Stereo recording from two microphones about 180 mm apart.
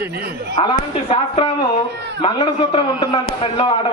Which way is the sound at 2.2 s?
30° left (ahead or behind).